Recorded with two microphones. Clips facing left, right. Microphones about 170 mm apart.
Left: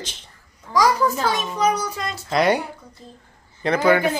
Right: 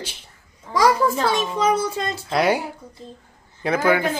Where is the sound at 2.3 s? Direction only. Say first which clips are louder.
Left 2 dB; 5° right (ahead or behind).